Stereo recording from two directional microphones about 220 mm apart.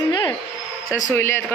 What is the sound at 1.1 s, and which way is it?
Speech, 10° left (ahead or behind).